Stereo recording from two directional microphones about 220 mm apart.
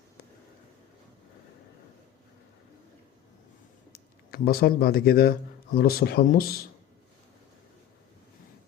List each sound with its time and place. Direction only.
4.3 s speech: 45° left (ahead or behind)